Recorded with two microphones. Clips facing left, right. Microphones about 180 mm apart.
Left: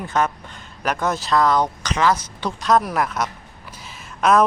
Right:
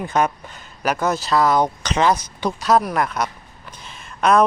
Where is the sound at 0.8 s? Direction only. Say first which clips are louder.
Right 2 dB; centre (ahead or behind).